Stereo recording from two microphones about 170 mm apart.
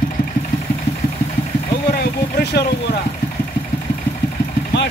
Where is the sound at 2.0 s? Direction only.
65° left (ahead or behind).